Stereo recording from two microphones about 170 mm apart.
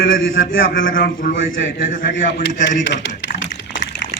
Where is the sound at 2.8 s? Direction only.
90° left.